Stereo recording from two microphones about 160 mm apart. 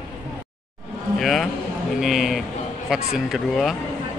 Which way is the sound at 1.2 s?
Centre (ahead or behind).